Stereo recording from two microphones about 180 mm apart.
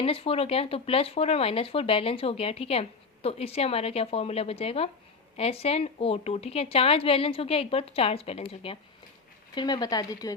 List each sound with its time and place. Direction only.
0.0 s speech: 35° left (ahead or behind)